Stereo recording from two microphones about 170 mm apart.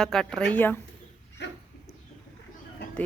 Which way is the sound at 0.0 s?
5° left (ahead or behind).